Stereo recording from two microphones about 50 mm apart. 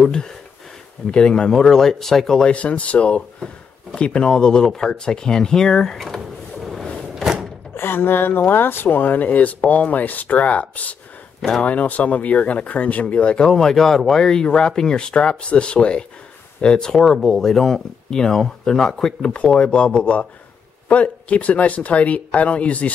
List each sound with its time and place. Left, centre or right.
0.0 s speech: centre
2.5 s speech: left; by 5.9 s centre
5.9 s a sound: centre
7.0 s door: centre
7.7 s speech: left
13.5 s speech: centre; by 22.8 s left